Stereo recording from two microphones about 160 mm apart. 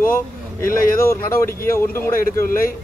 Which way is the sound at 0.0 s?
60° left (ahead or behind).